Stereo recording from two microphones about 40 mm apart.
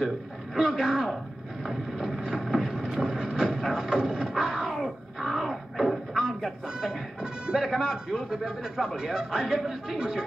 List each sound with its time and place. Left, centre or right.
0.7 s a man's voice: centre
1.6 s vehicle: centre
2.2 s boat: centre
3.2 s vehicle: centre
3.5 s a sound: centre
6.8 s music: centre
7.7 s a man's voice: centre